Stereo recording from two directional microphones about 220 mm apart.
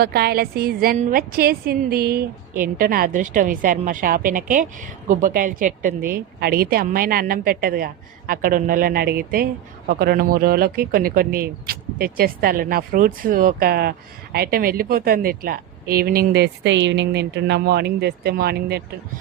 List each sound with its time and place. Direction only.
0.0 s a woman's voice: 45° right (ahead or behind)